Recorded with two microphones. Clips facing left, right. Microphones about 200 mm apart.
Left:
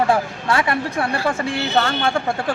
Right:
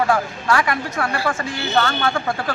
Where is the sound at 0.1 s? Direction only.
25° left (ahead or behind).